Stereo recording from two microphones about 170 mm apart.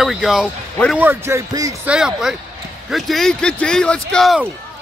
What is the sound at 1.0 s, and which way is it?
Speech, 15° right (ahead or behind).